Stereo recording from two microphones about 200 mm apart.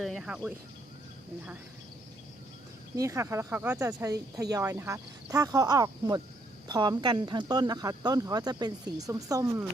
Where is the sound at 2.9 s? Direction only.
15° right (ahead or behind).